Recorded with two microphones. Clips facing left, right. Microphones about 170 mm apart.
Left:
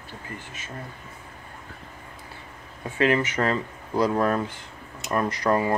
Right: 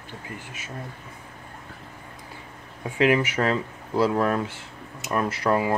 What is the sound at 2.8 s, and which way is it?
Speech, 10° right (ahead or behind).